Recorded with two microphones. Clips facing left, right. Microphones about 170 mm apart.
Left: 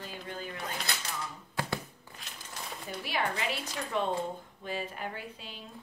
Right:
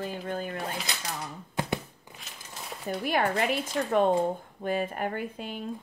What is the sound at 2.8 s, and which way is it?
Speech, 50° right (ahead or behind).